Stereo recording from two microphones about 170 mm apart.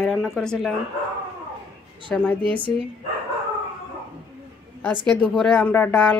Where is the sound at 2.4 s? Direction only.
30° right (ahead or behind).